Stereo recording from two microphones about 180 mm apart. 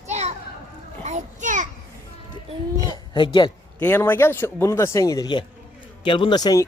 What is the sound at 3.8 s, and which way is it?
Speech, 10° left (ahead or behind).